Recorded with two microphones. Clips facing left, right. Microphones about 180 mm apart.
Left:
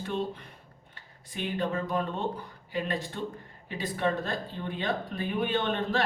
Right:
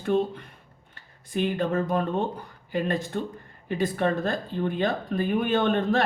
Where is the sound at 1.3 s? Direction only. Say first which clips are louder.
Right 6 dB; 45° right (ahead or behind).